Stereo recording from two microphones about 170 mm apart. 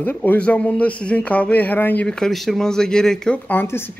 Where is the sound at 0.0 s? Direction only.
10° left (ahead or behind).